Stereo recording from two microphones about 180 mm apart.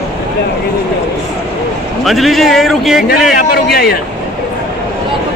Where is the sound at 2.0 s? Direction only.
Centre (ahead or behind).